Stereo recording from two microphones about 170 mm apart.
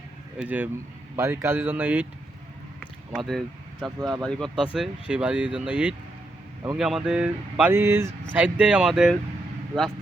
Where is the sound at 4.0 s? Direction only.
25° right (ahead or behind).